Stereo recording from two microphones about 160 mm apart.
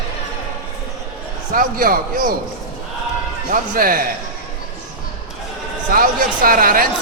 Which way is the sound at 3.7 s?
65° right (ahead or behind).